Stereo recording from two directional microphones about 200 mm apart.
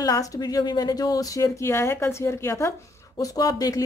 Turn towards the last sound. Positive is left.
turn(degrees=20)  # may be behind; listen again after turning